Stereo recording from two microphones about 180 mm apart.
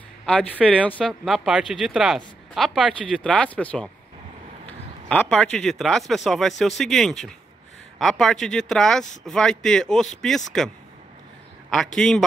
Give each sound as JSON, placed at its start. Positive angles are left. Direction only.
{"t": 0.2, "sound": "speech", "side_deg": 0}
{"t": 5.0, "sound": "speech", "side_deg": 5}
{"t": 11.7, "sound": "speech", "side_deg": 5}